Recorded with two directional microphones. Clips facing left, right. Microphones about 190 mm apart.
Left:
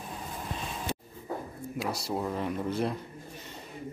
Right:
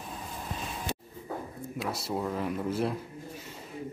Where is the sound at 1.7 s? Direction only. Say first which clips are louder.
Left 1 dB; centre (ahead or behind).